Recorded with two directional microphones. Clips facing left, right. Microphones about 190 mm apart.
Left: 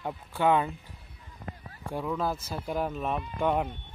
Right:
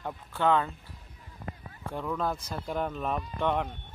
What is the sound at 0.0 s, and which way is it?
Speech, 10° left (ahead or behind).